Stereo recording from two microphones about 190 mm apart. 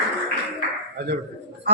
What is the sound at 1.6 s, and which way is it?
Speech, 60° right (ahead or behind).